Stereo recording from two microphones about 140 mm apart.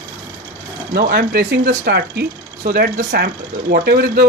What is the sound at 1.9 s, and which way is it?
Speech, 90° right.